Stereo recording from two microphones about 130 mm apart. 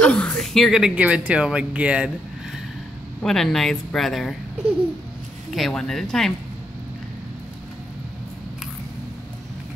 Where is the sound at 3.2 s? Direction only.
5° left (ahead or behind).